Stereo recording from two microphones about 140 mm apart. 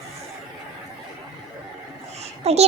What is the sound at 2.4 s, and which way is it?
Speech, 50° right (ahead or behind).